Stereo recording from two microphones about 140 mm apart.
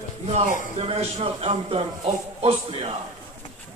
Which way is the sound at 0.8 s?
45° right (ahead or behind).